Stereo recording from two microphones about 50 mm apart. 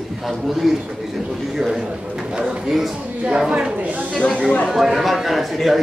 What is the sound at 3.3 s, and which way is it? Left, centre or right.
Speech, centre.